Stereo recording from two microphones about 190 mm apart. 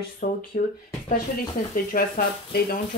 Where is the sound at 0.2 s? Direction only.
45° left (ahead or behind).